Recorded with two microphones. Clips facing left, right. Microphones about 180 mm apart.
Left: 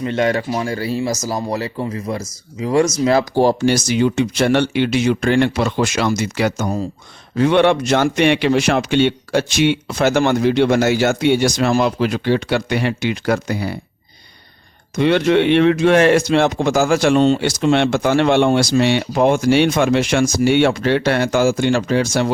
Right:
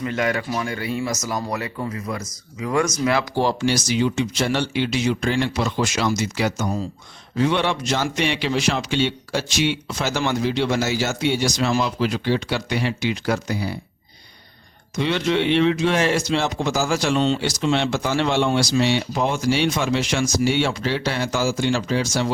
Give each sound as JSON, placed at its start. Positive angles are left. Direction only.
{"t": 0.0, "sound": "speech", "side_deg": 30}
{"t": 3.0, "sound": "speech", "side_deg": 40}
{"t": 14.9, "sound": "speech", "side_deg": 55}